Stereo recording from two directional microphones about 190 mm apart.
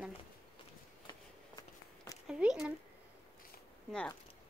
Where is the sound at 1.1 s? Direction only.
20° left (ahead or behind).